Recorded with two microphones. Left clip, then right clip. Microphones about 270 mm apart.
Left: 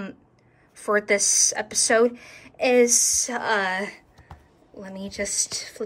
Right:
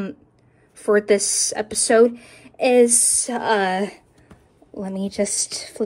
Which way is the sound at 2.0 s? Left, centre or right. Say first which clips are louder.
Right 2 dB; right.